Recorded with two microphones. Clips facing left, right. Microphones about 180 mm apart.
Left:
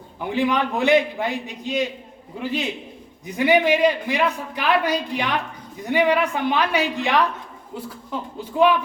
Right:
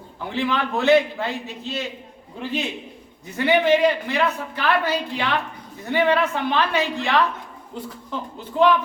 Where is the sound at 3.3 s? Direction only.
15° left (ahead or behind).